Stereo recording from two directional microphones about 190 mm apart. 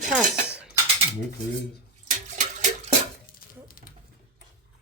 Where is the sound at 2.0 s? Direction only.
45° right (ahead or behind).